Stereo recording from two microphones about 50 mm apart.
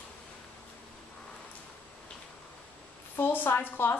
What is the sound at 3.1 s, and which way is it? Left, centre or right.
Speech, left.